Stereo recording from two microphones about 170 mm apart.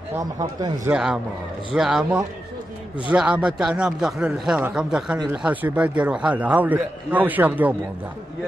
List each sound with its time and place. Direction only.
0.1 s speech: 20° right (ahead or behind)
0.8 s a man's voice: 5° right (ahead or behind)